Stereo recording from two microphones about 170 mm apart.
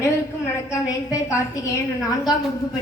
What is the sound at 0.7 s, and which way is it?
A woman's voice, 20° left (ahead or behind).